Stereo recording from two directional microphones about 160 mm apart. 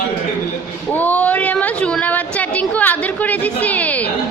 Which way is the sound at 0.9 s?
10° left (ahead or behind).